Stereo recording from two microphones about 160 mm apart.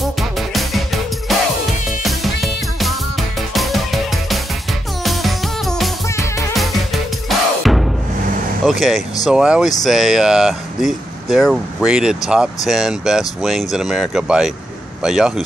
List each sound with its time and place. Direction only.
0.0 s music: centre (ahead or behind)
6.0 s music: 20° left (ahead or behind)
6.5 s music: centre (ahead or behind)
8.6 s speech: centre (ahead or behind)